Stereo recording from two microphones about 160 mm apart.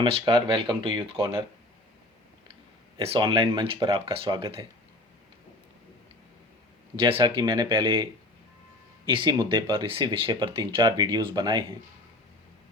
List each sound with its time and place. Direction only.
0.0 s speech: 30° right (ahead or behind)
3.0 s speech: 35° right (ahead or behind)
6.9 s speech: 35° right (ahead or behind)
9.0 s speech: 30° right (ahead or behind)